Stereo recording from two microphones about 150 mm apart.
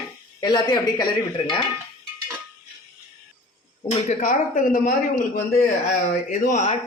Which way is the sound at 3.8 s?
55° left (ahead or behind).